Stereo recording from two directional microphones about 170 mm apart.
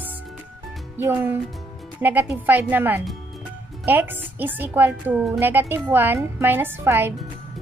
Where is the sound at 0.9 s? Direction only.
10° right (ahead or behind).